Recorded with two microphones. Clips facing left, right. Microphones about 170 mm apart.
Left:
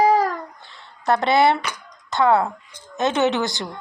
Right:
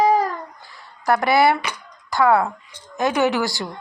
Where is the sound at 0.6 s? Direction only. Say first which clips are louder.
Even; 25° left (ahead or behind).